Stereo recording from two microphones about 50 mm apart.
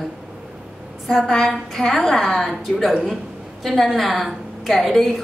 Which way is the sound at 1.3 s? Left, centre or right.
Centre.